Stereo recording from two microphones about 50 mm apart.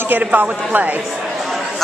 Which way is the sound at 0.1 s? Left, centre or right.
Right.